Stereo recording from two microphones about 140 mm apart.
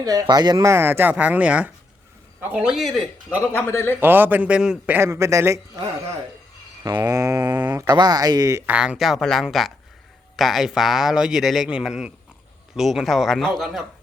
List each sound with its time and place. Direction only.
0.0 s a man's voice: 25° right (ahead or behind); by 3.1 s centre (ahead or behind)
3.5 s a man's voice: 15° left (ahead or behind)
4.0 s speech: 15° right (ahead or behind)
4.9 s speech: 20° right (ahead or behind)
7.0 s speech: 25° right (ahead or behind)
8.6 s a man's voice: 10° right (ahead or behind)